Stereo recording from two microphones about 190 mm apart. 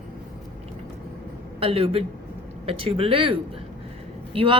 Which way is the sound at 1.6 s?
30° right (ahead or behind).